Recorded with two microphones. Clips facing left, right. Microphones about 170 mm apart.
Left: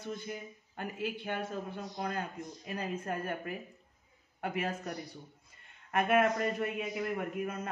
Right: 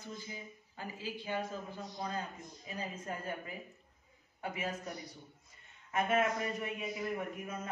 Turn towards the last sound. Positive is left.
turn(degrees=60)  # may be behind; listen again after turning